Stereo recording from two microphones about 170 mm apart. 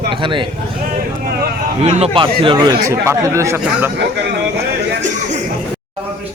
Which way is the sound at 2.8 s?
15° right (ahead or behind).